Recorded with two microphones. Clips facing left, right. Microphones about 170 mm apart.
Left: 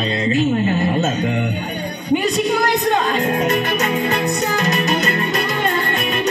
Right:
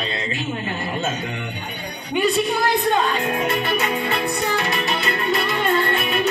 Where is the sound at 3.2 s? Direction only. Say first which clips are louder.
Left 4 dB; 40° left (ahead or behind).